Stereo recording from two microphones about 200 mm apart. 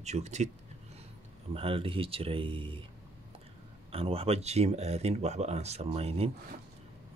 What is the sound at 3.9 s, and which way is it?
Speech, 30° right (ahead or behind).